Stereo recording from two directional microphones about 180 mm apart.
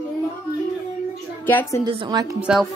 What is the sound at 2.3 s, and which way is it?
Speech, 5° right (ahead or behind).